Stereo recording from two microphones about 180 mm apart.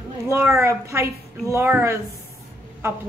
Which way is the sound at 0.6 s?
15° right (ahead or behind).